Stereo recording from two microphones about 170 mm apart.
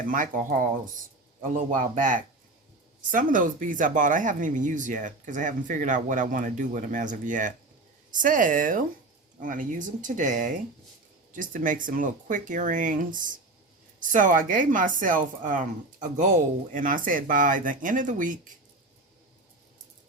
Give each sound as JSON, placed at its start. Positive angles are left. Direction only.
{"t": 0.1, "sound": "speech", "side_deg": -50}